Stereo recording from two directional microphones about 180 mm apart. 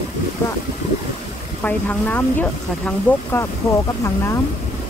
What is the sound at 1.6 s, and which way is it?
Speech, 10° left (ahead or behind).